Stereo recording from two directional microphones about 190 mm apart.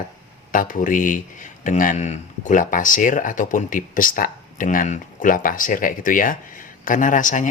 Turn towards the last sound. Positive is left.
turn(degrees=40)  # may be behind; listen again after turning